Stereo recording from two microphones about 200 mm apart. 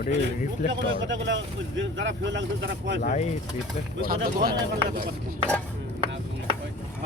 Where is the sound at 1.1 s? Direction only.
70° right (ahead or behind).